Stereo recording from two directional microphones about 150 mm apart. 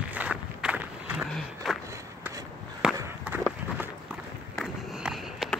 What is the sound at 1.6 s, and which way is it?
Battle cry, centre (ahead or behind).